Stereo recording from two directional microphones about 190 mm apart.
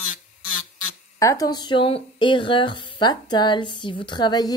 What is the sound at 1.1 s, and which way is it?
Speech, 15° left (ahead or behind).